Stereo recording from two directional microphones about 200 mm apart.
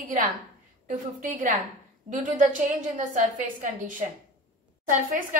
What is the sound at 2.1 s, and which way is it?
A woman's voice, 40° right (ahead or behind).